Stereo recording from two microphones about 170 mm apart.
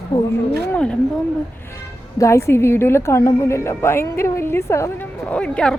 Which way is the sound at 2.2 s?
15° left (ahead or behind).